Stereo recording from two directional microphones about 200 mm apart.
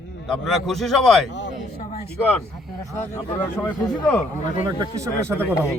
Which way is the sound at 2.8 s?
15° left (ahead or behind).